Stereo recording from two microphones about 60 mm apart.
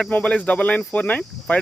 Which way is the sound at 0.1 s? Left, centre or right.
Left.